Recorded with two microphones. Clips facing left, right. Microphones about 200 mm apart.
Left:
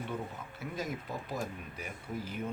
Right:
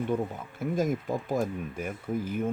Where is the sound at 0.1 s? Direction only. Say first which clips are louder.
Right 9 dB; 50° right (ahead or behind).